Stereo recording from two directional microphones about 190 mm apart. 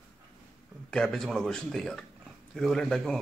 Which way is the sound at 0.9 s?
5° left (ahead or behind).